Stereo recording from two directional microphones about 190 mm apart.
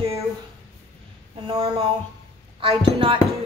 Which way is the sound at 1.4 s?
25° right (ahead or behind).